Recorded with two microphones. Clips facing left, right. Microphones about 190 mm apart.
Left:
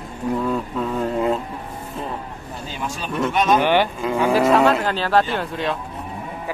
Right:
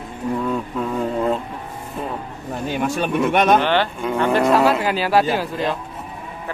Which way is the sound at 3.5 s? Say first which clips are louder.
Left 1 dB; 10° left (ahead or behind).